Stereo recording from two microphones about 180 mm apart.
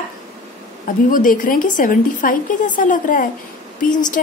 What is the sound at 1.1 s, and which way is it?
A woman's voice, 50° left (ahead or behind).